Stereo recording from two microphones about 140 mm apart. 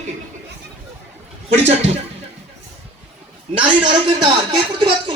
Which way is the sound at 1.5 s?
50° right (ahead or behind).